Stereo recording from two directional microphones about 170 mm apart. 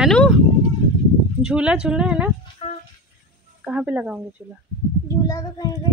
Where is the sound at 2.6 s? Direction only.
35° left (ahead or behind).